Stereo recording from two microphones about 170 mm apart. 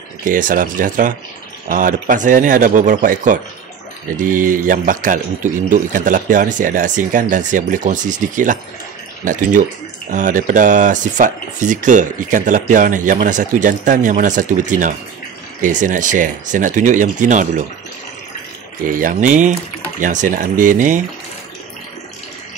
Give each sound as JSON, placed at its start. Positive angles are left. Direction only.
{"t": 0.2, "sound": "speech", "side_deg": -50}
{"t": 18.9, "sound": "speech", "side_deg": -50}